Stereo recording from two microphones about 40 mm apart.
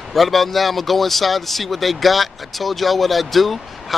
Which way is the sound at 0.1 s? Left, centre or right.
Centre.